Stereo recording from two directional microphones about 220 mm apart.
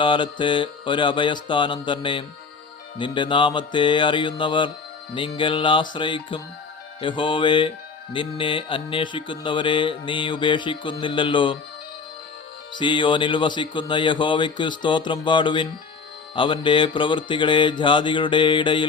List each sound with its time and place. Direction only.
0.0 s speech: 20° left (ahead or behind)
12.7 s speech: 20° left (ahead or behind)